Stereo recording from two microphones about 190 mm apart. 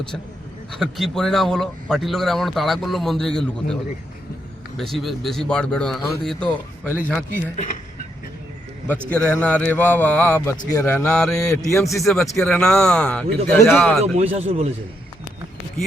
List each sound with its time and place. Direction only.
0.7 s a man's voice: centre (ahead or behind)
4.8 s a man's voice: centre (ahead or behind)
7.5 s speech: 45° left (ahead or behind)
9.0 s a man's voice: 5° left (ahead or behind)
14.0 s speech: 35° right (ahead or behind)